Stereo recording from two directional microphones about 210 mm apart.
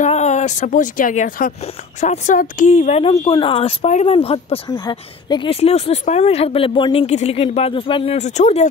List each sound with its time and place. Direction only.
0.0 s speech: 35° left (ahead or behind)